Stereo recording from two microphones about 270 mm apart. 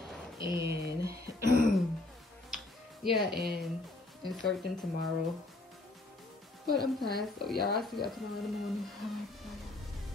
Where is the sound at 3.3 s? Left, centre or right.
Right.